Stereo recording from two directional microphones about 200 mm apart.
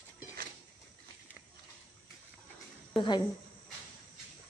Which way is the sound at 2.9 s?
25° left (ahead or behind).